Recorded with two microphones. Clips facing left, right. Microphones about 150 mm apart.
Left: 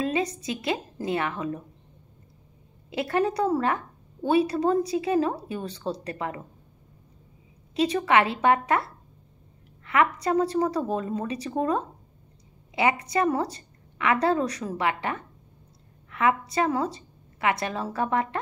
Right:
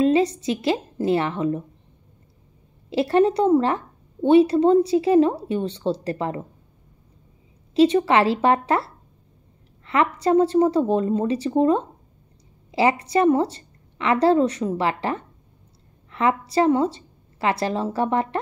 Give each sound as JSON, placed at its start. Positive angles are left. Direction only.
{"t": 0.0, "sound": "a woman's voice", "side_deg": -30}
{"t": 2.9, "sound": "a woman's voice", "side_deg": -30}
{"t": 7.7, "sound": "a woman's voice", "side_deg": -30}